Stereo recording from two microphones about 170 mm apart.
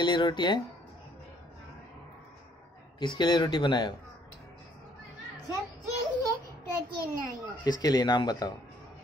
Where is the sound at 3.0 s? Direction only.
25° left (ahead or behind).